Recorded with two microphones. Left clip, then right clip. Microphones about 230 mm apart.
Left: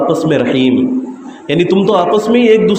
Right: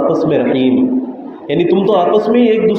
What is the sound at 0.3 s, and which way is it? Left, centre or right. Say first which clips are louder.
A man's voice: left 1 dB; left.